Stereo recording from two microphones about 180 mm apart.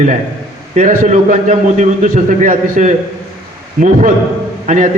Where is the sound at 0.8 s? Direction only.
45° right (ahead or behind).